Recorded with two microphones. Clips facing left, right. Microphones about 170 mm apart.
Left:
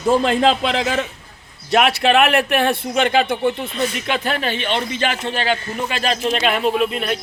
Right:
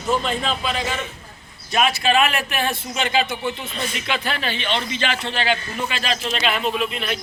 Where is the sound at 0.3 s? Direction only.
90° left.